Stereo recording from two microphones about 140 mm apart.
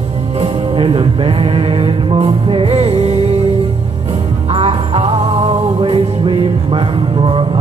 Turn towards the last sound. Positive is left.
turn(degrees=-35)  # may be behind; listen again after turning